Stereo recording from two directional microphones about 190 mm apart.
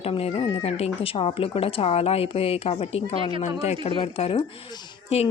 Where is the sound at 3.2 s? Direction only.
30° right (ahead or behind).